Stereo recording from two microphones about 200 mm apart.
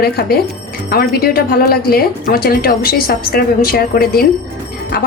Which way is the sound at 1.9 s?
50° left (ahead or behind).